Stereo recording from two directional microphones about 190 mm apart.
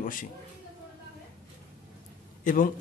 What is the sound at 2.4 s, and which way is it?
Speech, 45° left (ahead or behind).